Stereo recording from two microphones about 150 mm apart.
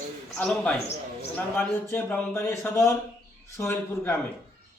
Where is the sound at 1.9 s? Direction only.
15° left (ahead or behind).